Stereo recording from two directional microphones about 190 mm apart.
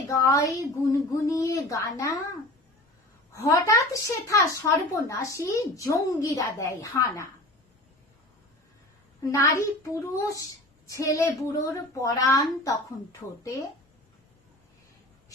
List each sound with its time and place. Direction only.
0.1 s a child's voice: 15° left (ahead or behind)
3.3 s a child's voice: 15° left (ahead or behind)
9.2 s a child's voice: 15° left (ahead or behind)